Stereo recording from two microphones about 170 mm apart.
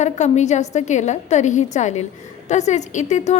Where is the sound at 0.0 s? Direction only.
45° left (ahead or behind).